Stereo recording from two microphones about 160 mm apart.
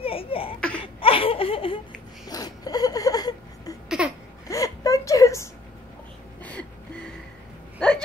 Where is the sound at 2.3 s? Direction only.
25° left (ahead or behind).